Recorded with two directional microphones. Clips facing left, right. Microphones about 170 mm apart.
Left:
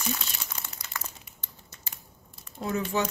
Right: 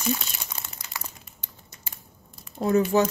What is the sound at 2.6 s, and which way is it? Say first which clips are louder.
Speech: right 8 dB; 40° right (ahead or behind).